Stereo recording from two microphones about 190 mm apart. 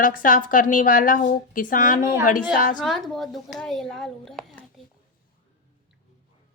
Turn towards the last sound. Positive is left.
turn(degrees=0)  # may be behind; listen again after turning